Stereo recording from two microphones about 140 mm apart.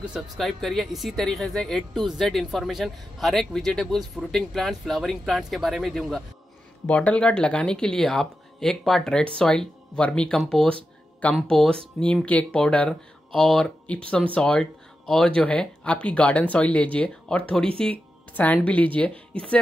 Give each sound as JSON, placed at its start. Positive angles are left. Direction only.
{"t": 0.0, "sound": "speech", "side_deg": -5}